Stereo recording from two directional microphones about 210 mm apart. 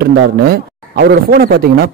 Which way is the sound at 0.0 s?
45° right (ahead or behind).